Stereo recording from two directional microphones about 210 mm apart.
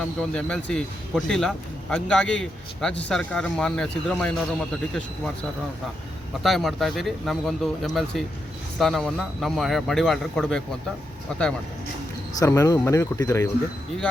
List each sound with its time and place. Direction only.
0.0 s speech: 5° left (ahead or behind)
6.4 s speech: centre (ahead or behind)
12.4 s speech: 15° left (ahead or behind)